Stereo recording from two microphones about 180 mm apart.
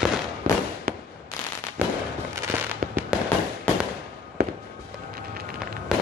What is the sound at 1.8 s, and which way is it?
Fireworks, 10° right (ahead or behind).